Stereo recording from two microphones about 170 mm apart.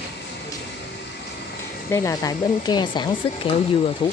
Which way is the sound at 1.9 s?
20° left (ahead or behind).